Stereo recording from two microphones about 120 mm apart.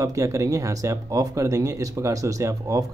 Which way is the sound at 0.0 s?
25° right (ahead or behind).